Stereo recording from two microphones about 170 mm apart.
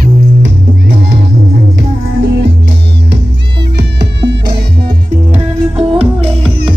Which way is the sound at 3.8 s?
75° right (ahead or behind).